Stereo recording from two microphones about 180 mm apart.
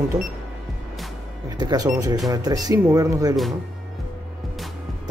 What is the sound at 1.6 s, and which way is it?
Speech, 20° right (ahead or behind).